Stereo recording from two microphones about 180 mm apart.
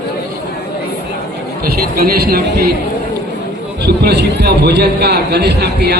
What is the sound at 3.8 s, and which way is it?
A man's voice, 65° right (ahead or behind).